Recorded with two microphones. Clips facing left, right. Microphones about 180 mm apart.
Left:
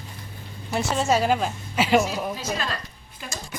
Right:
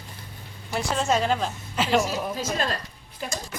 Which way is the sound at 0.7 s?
5° left (ahead or behind).